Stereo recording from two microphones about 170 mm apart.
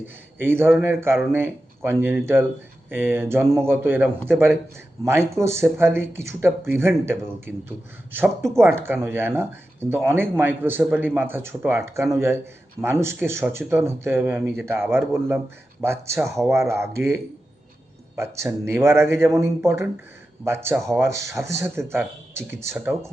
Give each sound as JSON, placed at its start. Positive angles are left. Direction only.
{"t": 0.3, "sound": "speech", "side_deg": -10}
{"t": 18.6, "sound": "speech", "side_deg": -15}